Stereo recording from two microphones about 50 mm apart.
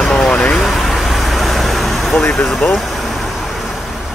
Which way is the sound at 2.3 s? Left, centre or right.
Centre.